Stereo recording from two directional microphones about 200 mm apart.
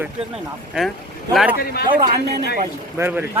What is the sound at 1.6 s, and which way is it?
Speech, 50° left (ahead or behind).